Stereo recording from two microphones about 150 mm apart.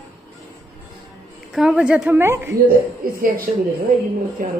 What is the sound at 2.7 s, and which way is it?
A woman's voice, 80° right.